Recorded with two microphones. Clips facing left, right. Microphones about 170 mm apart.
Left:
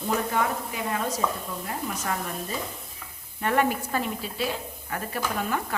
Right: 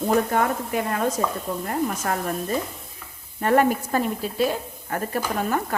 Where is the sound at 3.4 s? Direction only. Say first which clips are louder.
Right 5 dB; 45° right (ahead or behind).